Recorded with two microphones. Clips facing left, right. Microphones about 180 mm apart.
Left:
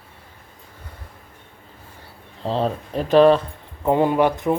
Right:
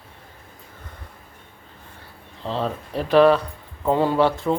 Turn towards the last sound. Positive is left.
turn(degrees=15)  # may be behind; listen again after turning